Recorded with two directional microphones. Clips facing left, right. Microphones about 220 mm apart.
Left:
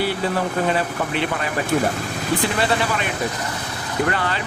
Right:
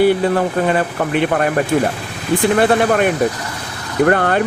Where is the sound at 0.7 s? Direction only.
50° right (ahead or behind).